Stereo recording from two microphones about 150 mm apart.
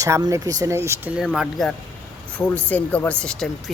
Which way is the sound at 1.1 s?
5° right (ahead or behind).